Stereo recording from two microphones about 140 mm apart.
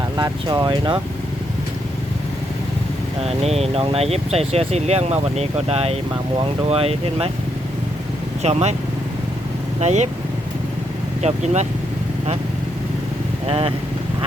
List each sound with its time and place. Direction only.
0.2 s speech: 30° right (ahead or behind)
3.2 s speech: 45° right (ahead or behind)
8.4 s speech: 50° right (ahead or behind)
9.8 s speech: 55° right (ahead or behind)
11.2 s speech: 55° right (ahead or behind)
13.5 s speech: 40° right (ahead or behind)